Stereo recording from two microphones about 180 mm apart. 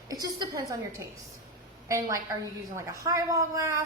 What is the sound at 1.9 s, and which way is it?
A woman's voice, 15° right (ahead or behind).